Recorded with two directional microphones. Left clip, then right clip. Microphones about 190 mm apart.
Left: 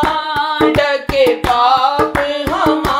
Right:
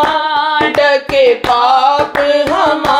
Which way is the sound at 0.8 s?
5° right (ahead or behind).